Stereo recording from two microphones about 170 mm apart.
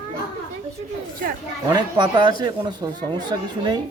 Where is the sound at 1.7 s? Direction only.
25° right (ahead or behind).